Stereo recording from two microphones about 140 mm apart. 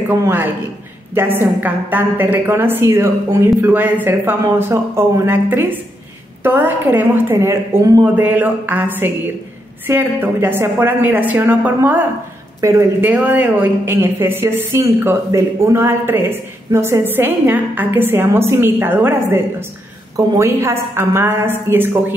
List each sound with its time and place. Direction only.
0.2 s a woman's voice: 15° right (ahead or behind)